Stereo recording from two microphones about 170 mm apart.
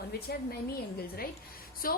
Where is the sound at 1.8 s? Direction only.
55° left (ahead or behind).